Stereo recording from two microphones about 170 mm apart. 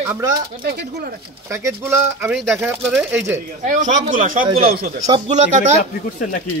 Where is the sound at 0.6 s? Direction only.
70° right (ahead or behind).